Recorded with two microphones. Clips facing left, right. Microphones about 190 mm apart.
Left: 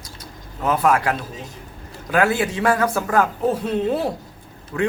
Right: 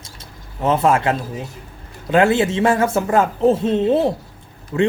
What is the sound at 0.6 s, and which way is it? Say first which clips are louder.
Speech: right 2 dB; 25° right (ahead or behind).